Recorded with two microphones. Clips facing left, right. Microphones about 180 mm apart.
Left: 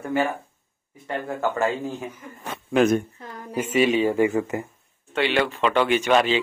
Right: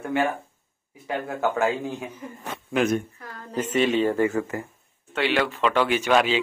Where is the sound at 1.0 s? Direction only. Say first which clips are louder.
Even; 5° right (ahead or behind).